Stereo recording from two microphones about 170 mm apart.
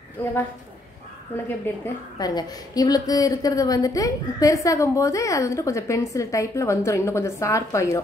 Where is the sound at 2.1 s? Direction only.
20° left (ahead or behind).